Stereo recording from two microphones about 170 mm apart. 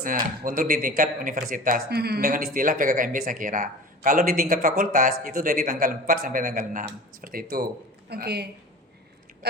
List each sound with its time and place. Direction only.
0.0 s speech: 55° right (ahead or behind)
8.1 s a woman's voice: 70° right (ahead or behind)